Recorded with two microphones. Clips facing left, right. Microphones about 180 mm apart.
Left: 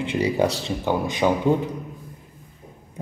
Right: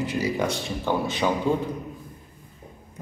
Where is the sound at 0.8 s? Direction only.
15° left (ahead or behind).